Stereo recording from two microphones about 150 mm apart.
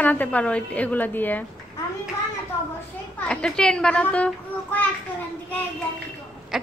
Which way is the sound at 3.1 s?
5° left (ahead or behind).